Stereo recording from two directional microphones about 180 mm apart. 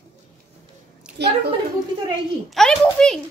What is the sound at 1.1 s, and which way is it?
Speech, 65° right (ahead or behind).